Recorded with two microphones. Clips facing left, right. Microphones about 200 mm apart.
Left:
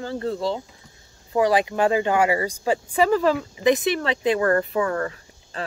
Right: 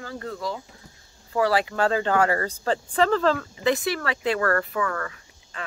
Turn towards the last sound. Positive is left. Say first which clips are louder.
# left 5 dB
turn(degrees=30)  # may be behind; listen again after turning